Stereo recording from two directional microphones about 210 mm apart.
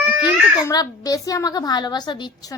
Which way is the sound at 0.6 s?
15° left (ahead or behind).